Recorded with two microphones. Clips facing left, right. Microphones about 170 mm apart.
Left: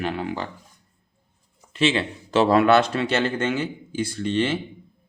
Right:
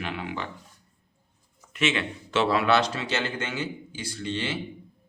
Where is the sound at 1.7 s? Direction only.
30° left (ahead or behind); by 4.5 s 50° left (ahead or behind).